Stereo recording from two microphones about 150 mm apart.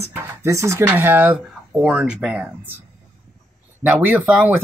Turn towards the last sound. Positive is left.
turn(degrees=-10)  # may be behind; listen again after turning